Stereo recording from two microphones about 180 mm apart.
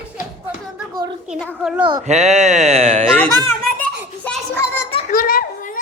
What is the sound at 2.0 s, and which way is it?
A man's voice, 40° right (ahead or behind).